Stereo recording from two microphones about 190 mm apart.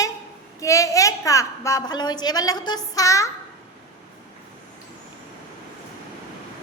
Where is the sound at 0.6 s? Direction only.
15° left (ahead or behind).